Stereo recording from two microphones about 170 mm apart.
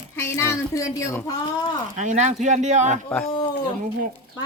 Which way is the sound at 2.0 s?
45° right (ahead or behind).